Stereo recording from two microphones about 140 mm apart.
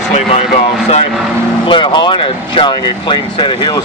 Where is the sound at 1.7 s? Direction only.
35° left (ahead or behind).